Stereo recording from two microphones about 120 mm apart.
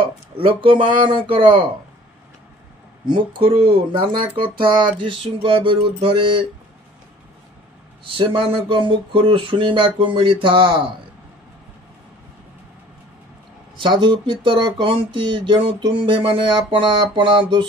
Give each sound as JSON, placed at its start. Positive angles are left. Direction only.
{"t": 0.4, "sound": "speech", "side_deg": -45}
{"t": 3.1, "sound": "speech", "side_deg": -45}
{"t": 8.0, "sound": "speech", "side_deg": -45}
{"t": 13.7, "sound": "speech", "side_deg": -40}